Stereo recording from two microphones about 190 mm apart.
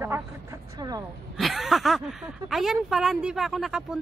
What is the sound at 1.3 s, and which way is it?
Speech, centre (ahead or behind).